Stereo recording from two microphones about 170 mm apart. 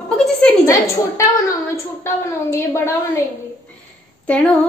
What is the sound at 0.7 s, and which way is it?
A woman's voice, 20° left (ahead or behind).